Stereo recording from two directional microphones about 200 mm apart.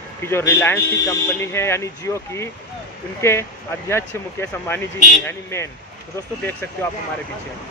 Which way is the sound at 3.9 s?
10° left (ahead or behind).